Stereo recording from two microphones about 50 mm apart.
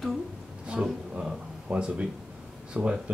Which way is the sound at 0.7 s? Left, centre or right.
Centre.